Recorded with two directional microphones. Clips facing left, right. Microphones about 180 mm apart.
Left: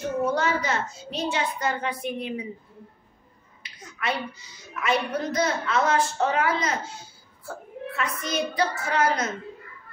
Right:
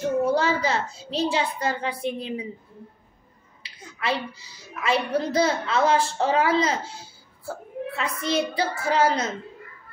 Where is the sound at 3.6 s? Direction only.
30° right (ahead or behind).